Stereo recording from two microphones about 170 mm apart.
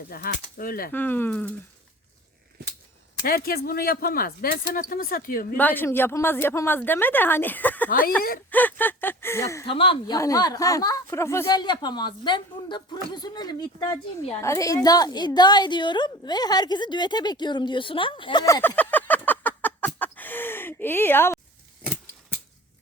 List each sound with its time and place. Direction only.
0.1 s speech: 60° left (ahead or behind)
0.9 s a woman's voice: 10° left (ahead or behind)
3.2 s speech: 60° left (ahead or behind)
5.5 s a woman's voice: 10° left (ahead or behind)
7.9 s speech: 55° left (ahead or behind)
8.4 s speech: 10° left (ahead or behind)
9.6 s speech: 30° left (ahead or behind)
10.2 s speech: 20° left (ahead or behind)
18.4 s a sound: 20° left (ahead or behind)